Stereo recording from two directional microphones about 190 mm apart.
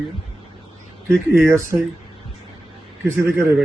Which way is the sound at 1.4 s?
15° right (ahead or behind).